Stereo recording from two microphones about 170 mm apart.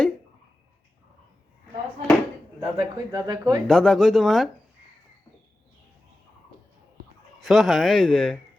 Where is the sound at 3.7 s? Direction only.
5° left (ahead or behind).